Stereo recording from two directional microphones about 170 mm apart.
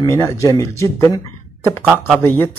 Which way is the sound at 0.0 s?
15° left (ahead or behind).